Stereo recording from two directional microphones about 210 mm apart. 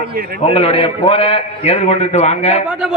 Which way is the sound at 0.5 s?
25° left (ahead or behind).